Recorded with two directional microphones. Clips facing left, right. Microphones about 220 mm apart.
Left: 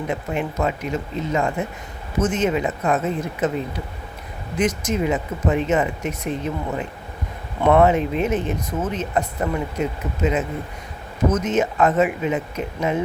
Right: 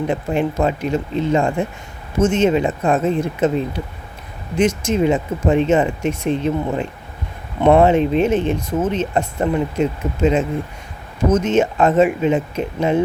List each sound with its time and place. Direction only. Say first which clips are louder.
0.1 s speech: right 5 dB; 30° right (ahead or behind)
7.6 s speech: right 3 dB; 25° right (ahead or behind)